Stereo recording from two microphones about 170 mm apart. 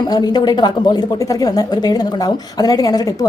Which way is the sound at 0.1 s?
25° left (ahead or behind).